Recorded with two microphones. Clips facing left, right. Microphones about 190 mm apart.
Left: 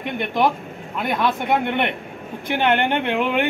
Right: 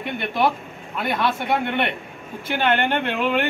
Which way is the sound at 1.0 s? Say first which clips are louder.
Left 1 dB; 20° left (ahead or behind).